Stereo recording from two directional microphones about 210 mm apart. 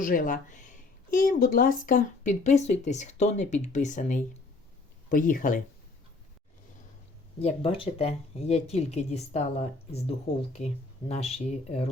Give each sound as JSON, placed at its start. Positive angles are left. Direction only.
{"t": 0.0, "sound": "speech", "side_deg": 40}
{"t": 7.3, "sound": "speech", "side_deg": 25}